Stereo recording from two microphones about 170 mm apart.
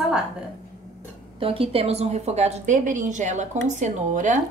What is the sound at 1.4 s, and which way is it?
A woman's voice, 35° right (ahead or behind).